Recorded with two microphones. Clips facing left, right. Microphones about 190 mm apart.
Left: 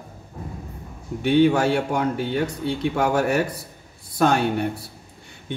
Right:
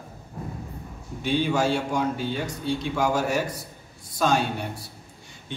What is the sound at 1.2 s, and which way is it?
Speech, 60° left (ahead or behind).